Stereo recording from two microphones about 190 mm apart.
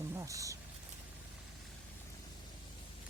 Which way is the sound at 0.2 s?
15° right (ahead or behind).